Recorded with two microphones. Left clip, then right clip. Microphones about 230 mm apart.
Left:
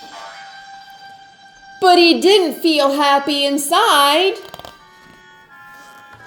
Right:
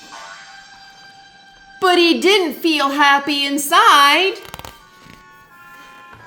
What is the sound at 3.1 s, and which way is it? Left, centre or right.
Speech, centre.